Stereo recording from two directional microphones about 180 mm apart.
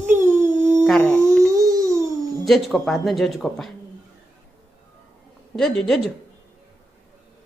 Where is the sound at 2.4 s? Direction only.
Centre (ahead or behind).